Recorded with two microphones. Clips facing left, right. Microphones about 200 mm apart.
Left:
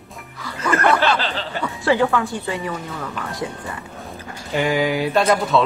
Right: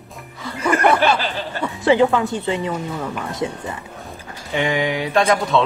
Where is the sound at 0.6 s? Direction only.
15° right (ahead or behind).